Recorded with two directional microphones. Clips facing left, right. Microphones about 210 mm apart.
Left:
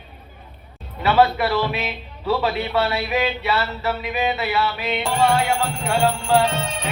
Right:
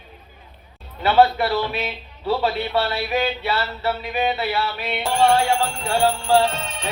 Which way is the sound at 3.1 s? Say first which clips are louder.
Left 1 dB; 30° right (ahead or behind).